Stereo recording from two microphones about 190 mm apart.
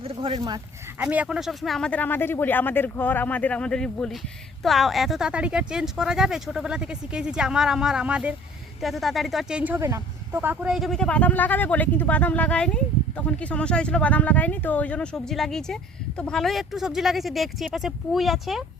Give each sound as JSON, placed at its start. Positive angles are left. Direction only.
{"t": 0.0, "sound": "speech", "side_deg": -30}
{"t": 0.9, "sound": "speech", "side_deg": -5}